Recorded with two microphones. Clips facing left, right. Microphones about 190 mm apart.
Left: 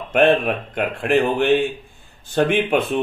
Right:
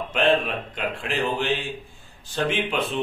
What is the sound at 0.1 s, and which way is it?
Speech, 55° left (ahead or behind).